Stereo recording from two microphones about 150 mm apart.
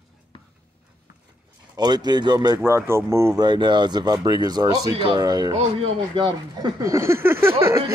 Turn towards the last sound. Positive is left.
turn(degrees=-15)  # may be behind; listen again after turning